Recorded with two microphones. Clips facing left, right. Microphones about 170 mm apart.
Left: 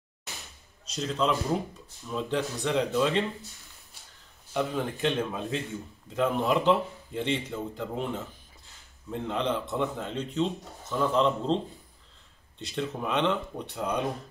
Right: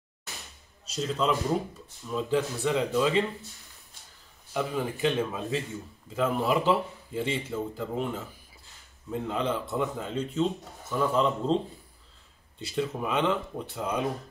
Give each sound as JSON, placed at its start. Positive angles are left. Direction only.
{"t": 0.8, "sound": "a man's voice", "side_deg": -5}
{"t": 4.6, "sound": "a man's voice", "side_deg": -10}